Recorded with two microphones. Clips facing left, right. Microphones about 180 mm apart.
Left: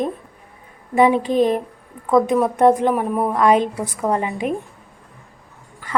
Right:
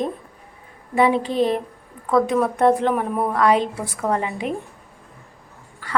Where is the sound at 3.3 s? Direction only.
20° left (ahead or behind).